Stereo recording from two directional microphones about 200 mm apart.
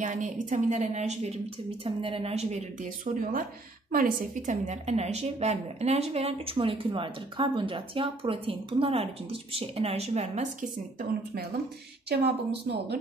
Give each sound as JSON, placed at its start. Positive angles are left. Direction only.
{"t": 0.0, "sound": "a woman's voice", "side_deg": -40}
{"t": 12.1, "sound": "a woman's voice", "side_deg": -55}